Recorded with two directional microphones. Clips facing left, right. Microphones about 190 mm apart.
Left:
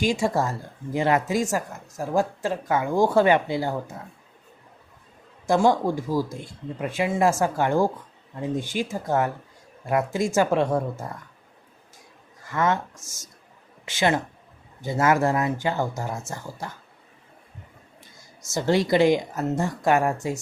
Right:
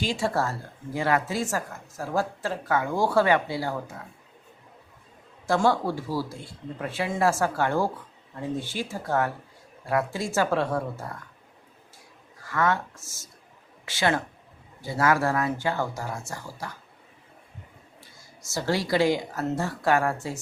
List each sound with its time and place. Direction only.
0.0 s a woman's voice: 15° left (ahead or behind)
5.5 s a woman's voice: 15° left (ahead or behind)
12.5 s speech: 20° left (ahead or behind)
18.5 s speech: 20° left (ahead or behind)